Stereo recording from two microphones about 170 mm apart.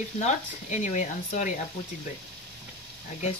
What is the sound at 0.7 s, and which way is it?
Speech, 45° left (ahead or behind).